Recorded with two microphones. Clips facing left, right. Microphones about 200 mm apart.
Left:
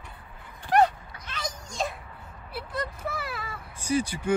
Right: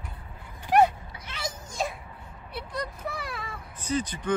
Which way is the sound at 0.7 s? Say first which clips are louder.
Right 1 dB; 10° right (ahead or behind).